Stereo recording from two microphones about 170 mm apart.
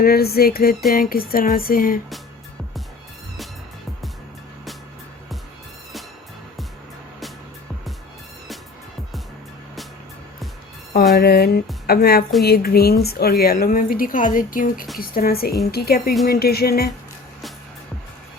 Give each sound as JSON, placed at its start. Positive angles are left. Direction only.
{"t": 0.0, "sound": "a woman's voice", "side_deg": 65}
{"t": 11.1, "sound": "a woman's voice", "side_deg": 70}